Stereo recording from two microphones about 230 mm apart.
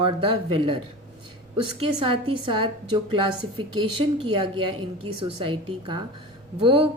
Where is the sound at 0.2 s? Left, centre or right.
Right.